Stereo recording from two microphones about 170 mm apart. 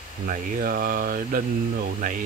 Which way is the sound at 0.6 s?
60° right (ahead or behind).